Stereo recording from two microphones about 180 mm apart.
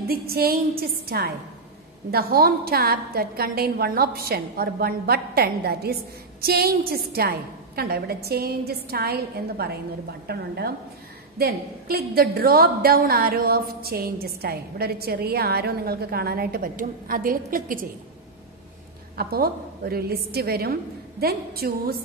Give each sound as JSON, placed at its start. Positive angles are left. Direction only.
{"t": 0.1, "sound": "a woman's voice", "side_deg": -55}
{"t": 19.1, "sound": "a woman's voice", "side_deg": -60}